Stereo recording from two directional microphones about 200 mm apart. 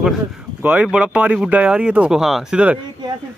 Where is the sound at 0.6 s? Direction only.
5° right (ahead or behind).